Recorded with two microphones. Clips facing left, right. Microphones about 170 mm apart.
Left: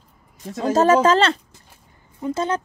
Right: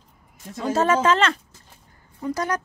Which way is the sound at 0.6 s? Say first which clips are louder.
Left 5 dB; 40° left (ahead or behind).